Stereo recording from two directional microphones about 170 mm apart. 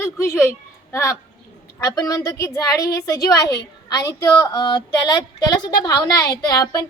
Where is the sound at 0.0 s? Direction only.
15° left (ahead or behind).